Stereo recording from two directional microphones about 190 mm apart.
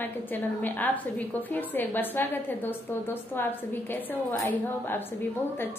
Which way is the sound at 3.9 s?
10° left (ahead or behind).